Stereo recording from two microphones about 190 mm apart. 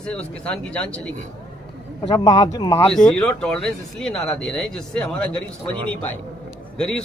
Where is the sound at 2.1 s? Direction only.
20° left (ahead or behind).